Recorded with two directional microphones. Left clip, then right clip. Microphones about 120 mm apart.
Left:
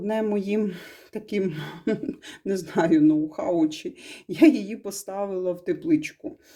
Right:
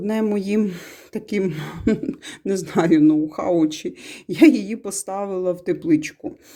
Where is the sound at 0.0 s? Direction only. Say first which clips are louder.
Right 3 dB; 35° right (ahead or behind).